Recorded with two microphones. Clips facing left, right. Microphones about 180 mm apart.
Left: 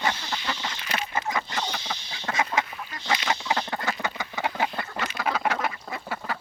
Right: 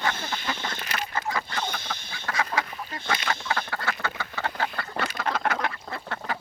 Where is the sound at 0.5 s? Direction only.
50° right (ahead or behind).